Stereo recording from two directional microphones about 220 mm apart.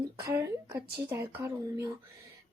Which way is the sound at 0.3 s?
10° right (ahead or behind).